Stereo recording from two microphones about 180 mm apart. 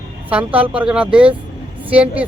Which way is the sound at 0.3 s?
10° right (ahead or behind).